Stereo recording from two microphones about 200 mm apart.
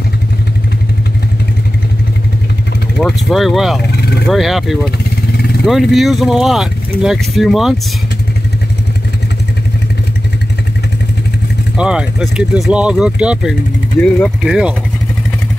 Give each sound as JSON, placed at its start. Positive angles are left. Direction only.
{"t": 3.0, "sound": "speech", "side_deg": 5}
{"t": 3.9, "sound": "vehicle", "side_deg": 55}
{"t": 4.3, "sound": "speech", "side_deg": 0}
{"t": 11.7, "sound": "speech", "side_deg": -5}